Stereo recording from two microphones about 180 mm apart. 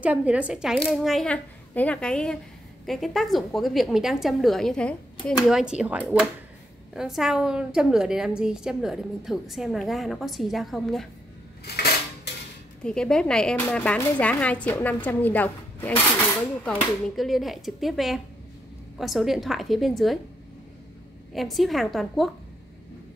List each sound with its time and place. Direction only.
0.0 s a woman's voice: 5° right (ahead or behind)
11.6 s a sound: 60° left (ahead or behind)
12.3 s dishes: 70° left (ahead or behind)
12.8 s a woman's voice: 5° left (ahead or behind)
21.3 s a woman's voice: centre (ahead or behind)